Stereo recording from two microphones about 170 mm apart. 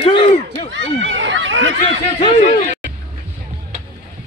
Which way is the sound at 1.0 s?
90° right.